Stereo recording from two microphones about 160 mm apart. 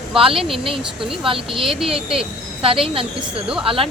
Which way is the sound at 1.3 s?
35° right (ahead or behind).